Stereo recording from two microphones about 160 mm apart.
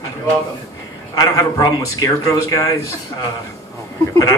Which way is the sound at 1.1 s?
25° left (ahead or behind).